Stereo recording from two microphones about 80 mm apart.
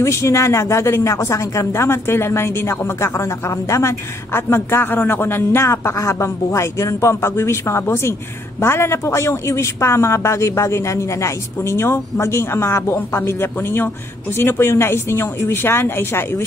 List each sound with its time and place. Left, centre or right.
0.0 s speech: left